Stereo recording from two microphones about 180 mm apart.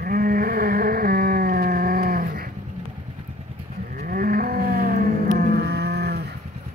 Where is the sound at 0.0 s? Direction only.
50° right (ahead or behind).